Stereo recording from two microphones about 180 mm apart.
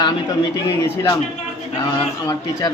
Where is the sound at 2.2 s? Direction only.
20° left (ahead or behind).